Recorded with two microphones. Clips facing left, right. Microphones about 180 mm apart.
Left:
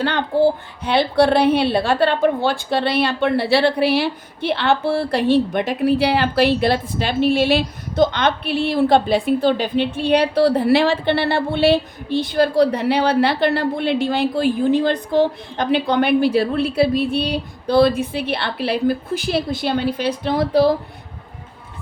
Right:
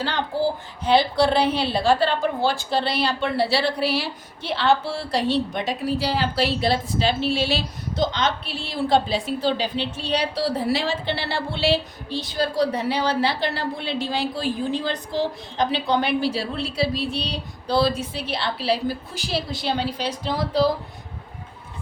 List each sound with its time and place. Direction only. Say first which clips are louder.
0.0 s a woman's voice: left 7 dB; 60° left (ahead or behind)